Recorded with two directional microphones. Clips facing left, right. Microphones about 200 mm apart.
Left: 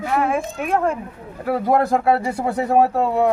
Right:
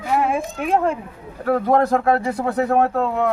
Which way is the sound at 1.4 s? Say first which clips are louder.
Right 1 dB; 5° left (ahead or behind).